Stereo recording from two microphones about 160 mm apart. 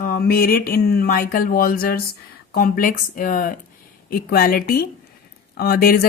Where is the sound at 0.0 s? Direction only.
70° left (ahead or behind).